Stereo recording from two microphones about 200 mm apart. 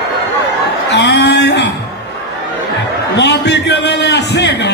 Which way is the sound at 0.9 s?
60° left (ahead or behind).